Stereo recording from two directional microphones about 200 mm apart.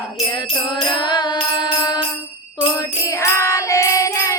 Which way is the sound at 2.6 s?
20° left (ahead or behind).